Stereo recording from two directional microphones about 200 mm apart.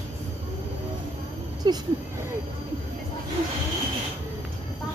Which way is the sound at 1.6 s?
20° right (ahead or behind).